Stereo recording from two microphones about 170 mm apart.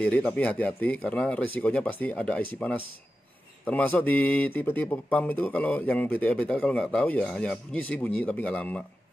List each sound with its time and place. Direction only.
0.0 s a man's voice: 5° left (ahead or behind)